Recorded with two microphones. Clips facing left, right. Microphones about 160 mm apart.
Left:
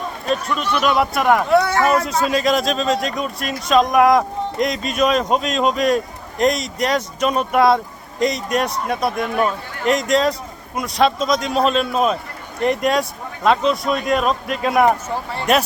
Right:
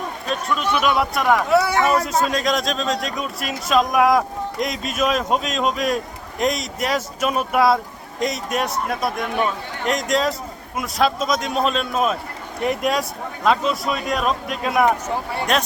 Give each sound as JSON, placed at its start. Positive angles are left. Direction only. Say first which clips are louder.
{"t": 0.3, "sound": "a man's voice", "louder": "left 2 dB", "side_deg": 0}